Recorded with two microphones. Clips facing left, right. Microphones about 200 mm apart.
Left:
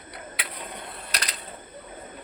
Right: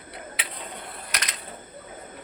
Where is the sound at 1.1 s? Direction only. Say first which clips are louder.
Even; 35° left (ahead or behind).